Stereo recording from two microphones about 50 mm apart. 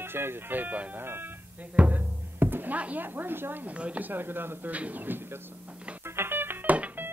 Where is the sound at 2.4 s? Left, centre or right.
Right.